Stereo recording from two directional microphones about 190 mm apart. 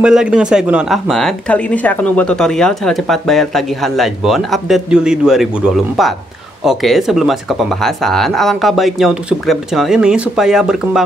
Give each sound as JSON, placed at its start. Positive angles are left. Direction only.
{"t": 0.0, "sound": "speech", "side_deg": -5}